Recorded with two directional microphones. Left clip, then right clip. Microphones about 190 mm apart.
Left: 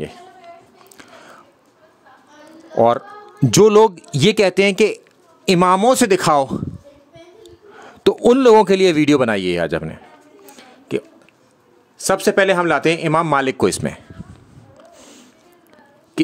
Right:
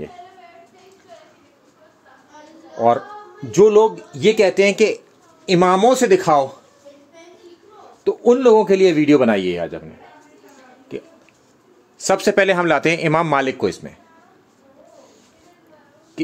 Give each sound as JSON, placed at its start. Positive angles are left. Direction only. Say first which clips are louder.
{"t": 3.4, "sound": "speech", "louder": "left 1 dB", "side_deg": 60}
{"t": 8.0, "sound": "a man's voice", "louder": "left 2 dB", "side_deg": 60}
{"t": 10.5, "sound": "a sound", "louder": "left 8 dB", "side_deg": 45}
{"t": 12.0, "sound": "a man's voice", "louder": "even", "side_deg": 15}
{"t": 13.6, "sound": "speech", "louder": "left 4 dB", "side_deg": 50}